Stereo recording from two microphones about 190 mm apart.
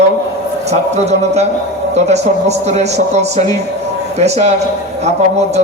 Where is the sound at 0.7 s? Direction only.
35° right (ahead or behind).